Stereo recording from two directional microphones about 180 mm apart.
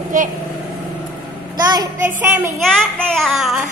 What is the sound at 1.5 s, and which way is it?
Speech, 20° right (ahead or behind).